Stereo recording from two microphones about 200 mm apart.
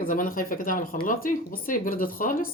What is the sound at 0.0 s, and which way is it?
Speech, 45° left (ahead or behind).